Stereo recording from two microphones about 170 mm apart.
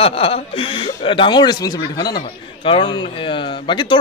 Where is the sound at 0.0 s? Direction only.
35° left (ahead or behind).